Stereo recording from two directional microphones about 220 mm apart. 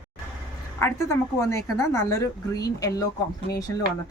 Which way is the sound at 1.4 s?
15° left (ahead or behind).